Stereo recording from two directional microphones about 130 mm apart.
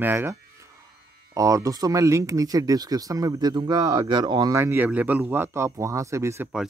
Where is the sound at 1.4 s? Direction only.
25° right (ahead or behind).